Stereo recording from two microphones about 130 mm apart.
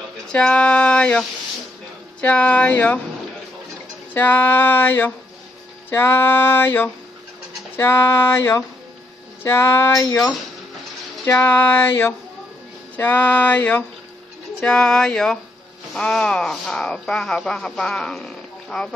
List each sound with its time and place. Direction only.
0.3 s music: 5° left (ahead or behind)
2.2 s music: 10° left (ahead or behind)
4.1 s music: 15° left (ahead or behind)
9.4 s a sound: 20° left (ahead or behind)
11.2 s music: 15° left (ahead or behind)
14.6 s speech: 5° left (ahead or behind)